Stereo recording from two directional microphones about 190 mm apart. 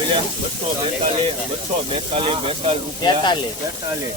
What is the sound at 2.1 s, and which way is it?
Speech, 30° right (ahead or behind).